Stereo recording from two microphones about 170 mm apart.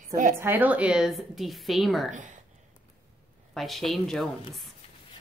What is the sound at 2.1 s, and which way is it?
Speech, 45° right (ahead or behind).